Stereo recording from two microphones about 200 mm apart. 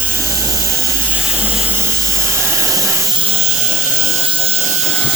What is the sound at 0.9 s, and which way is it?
Vehicle, 10° right (ahead or behind).